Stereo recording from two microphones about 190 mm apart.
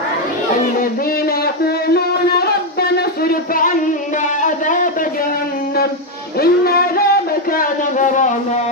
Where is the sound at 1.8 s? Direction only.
55° left (ahead or behind).